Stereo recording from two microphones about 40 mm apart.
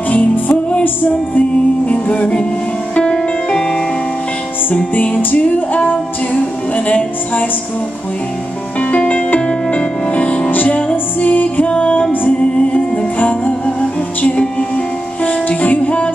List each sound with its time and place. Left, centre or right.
0.1 s music: left
1.9 s music: left
4.6 s music: left
8.9 s music: left
11.1 s music: left
12.7 s music: left
14.2 s music: left
15.2 s music: left